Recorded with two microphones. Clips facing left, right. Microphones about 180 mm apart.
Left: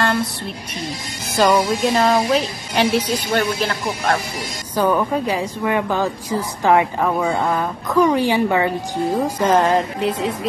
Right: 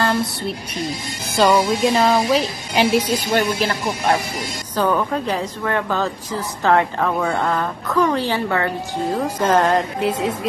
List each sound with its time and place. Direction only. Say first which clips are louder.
1.4 s a woman's voice: even; centre (ahead or behind)
4.7 s a woman's voice: left 2 dB; 10° left (ahead or behind)
9.4 s a woman's voice: even; centre (ahead or behind)